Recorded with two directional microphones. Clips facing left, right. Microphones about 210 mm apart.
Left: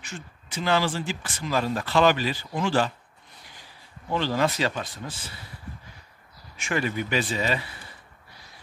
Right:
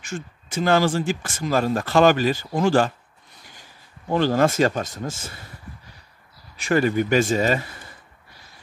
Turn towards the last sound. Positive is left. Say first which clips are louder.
# right 6 dB
turn(degrees=-45)  # may be behind; listen again after turning